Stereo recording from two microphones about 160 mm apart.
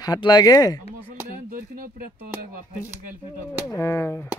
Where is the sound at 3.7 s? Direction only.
20° left (ahead or behind).